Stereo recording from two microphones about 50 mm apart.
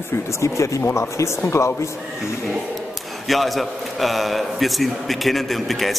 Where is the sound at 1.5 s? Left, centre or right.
Left.